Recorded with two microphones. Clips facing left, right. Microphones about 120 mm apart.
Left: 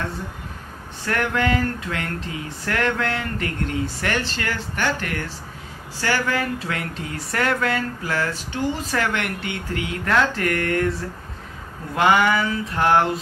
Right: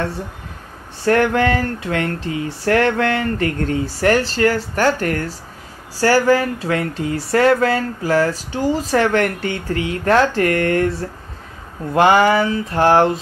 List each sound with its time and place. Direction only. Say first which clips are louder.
1.0 s speech: right 7 dB; 35° right (ahead or behind)
11.9 s speech: right 5 dB; 30° right (ahead or behind)